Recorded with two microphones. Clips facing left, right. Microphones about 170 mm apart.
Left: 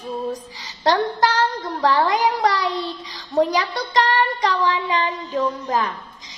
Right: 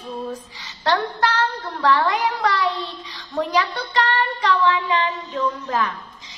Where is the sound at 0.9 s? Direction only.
40° left (ahead or behind).